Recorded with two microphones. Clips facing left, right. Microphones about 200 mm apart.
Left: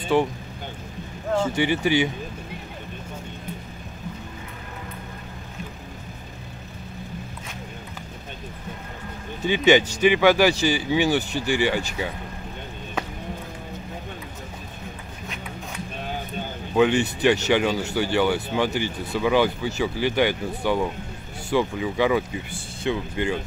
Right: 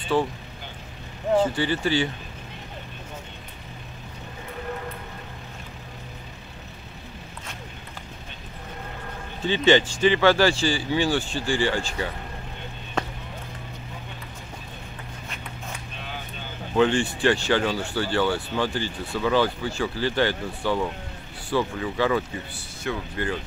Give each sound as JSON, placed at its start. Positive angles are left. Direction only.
{"t": 0.1, "sound": "speech", "side_deg": 15}
{"t": 1.5, "sound": "speech", "side_deg": 15}
{"t": 9.5, "sound": "speech", "side_deg": 10}
{"t": 16.0, "sound": "a sound", "side_deg": 45}
{"t": 16.7, "sound": "speech", "side_deg": 15}